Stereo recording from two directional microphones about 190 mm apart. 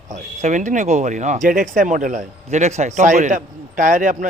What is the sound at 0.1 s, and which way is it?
Speech, 40° right (ahead or behind).